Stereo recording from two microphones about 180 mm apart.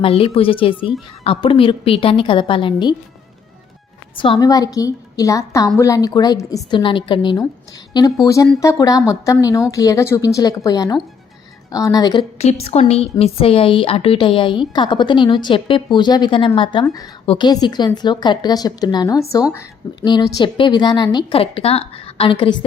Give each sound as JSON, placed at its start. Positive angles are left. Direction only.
{"t": 0.0, "sound": "speech", "side_deg": 30}
{"t": 4.1, "sound": "speech", "side_deg": 30}
{"t": 12.4, "sound": "speech", "side_deg": 35}